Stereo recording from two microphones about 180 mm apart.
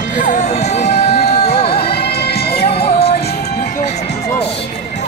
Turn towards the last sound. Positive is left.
turn(degrees=35)  # may be behind; listen again after turning